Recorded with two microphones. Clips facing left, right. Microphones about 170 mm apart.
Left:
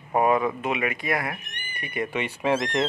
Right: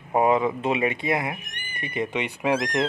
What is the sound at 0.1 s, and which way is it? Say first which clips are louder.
Speech: right 1 dB; 20° right (ahead or behind).